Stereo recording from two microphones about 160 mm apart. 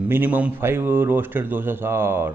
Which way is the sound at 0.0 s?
10° right (ahead or behind).